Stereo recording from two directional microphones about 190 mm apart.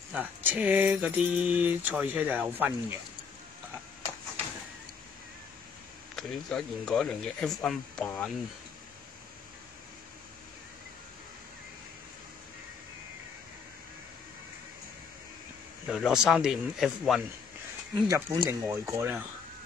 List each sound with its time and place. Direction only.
0.1 s speech: 10° right (ahead or behind)
6.1 s speech: 5° left (ahead or behind)
15.9 s speech: centre (ahead or behind)
18.0 s speech: 20° right (ahead or behind)